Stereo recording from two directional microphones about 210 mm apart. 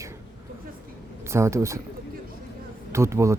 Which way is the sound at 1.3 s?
15° right (ahead or behind).